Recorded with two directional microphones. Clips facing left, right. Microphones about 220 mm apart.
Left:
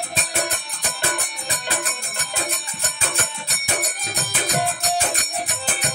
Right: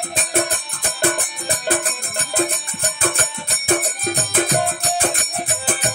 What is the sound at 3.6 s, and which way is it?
Music, 50° right (ahead or behind).